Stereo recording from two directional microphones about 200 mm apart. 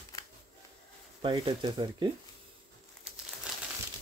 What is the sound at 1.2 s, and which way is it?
Speech, 25° right (ahead or behind).